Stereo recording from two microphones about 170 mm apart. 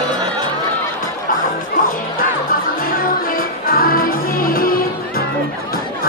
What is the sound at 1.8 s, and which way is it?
Music, 55° left (ahead or behind).